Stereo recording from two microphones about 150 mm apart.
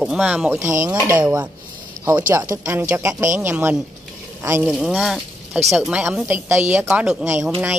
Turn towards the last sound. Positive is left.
turn(degrees=-10)  # may be behind; listen again after turning